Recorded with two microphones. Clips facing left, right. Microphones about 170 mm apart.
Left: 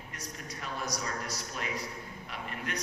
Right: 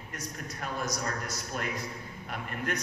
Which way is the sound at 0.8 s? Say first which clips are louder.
Right 1 dB; 50° right (ahead or behind).